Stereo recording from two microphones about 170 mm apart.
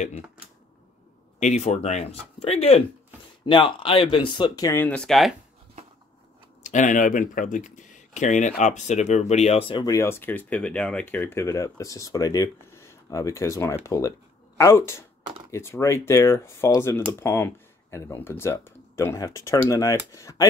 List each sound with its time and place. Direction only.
1.4 s speech: 40° left (ahead or behind); by 5.3 s centre (ahead or behind)
6.6 s speech: 45° left (ahead or behind)
9.8 s speech: 15° left (ahead or behind)